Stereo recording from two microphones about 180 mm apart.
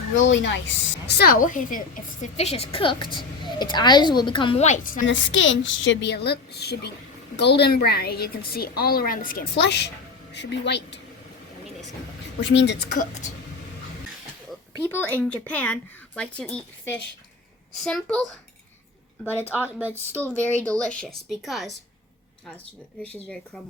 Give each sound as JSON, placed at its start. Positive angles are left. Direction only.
{"t": 0.3, "sound": "a woman's voice", "side_deg": 90}
{"t": 1.0, "sound": "a woman's voice", "side_deg": 60}
{"t": 2.2, "sound": "a woman's voice", "side_deg": 35}
{"t": 4.6, "sound": "a woman's voice", "side_deg": 45}
{"t": 5.0, "sound": "a woman's voice", "side_deg": 90}
{"t": 12.4, "sound": "a woman's voice", "side_deg": 90}
{"t": 14.8, "sound": "a woman's voice", "side_deg": 10}